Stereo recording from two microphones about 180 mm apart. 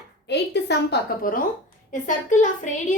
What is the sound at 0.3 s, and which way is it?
A woman's voice, 70° left (ahead or behind).